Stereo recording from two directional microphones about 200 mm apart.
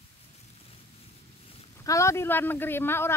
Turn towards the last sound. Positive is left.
turn(degrees=10)  # may be behind; listen again after turning